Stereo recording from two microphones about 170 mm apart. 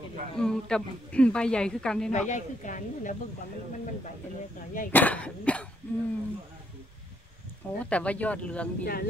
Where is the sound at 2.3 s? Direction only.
50° left (ahead or behind).